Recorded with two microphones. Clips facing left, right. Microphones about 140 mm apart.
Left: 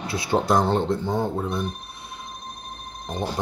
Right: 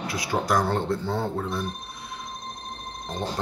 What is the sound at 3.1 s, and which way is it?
Speech, 10° left (ahead or behind).